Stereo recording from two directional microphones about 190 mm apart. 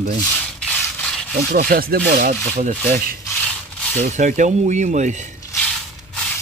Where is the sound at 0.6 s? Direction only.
5° left (ahead or behind).